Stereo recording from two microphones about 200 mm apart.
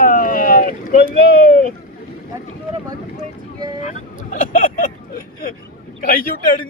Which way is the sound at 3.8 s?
40° left (ahead or behind).